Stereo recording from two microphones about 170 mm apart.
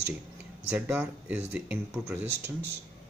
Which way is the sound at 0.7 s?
5° right (ahead or behind).